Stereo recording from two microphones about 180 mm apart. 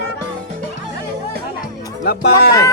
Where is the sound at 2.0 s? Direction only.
65° left (ahead or behind).